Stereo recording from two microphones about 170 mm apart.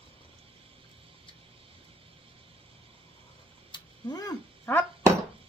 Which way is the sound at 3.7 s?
20° left (ahead or behind).